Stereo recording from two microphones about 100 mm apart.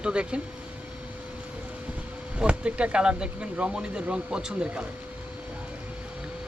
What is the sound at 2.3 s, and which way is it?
Speech, 10° right (ahead or behind).